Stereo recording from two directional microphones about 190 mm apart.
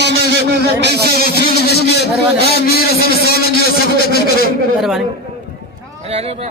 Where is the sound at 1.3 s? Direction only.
55° left (ahead or behind).